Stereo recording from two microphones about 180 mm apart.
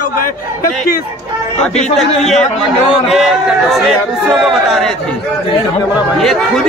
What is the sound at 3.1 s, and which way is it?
A man's voice, centre (ahead or behind).